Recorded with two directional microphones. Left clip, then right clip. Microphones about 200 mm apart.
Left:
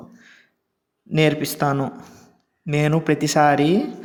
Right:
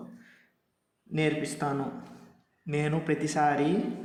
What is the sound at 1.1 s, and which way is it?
A man's voice, 45° left (ahead or behind).